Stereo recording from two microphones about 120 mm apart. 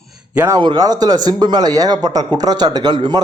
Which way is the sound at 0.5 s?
35° right (ahead or behind).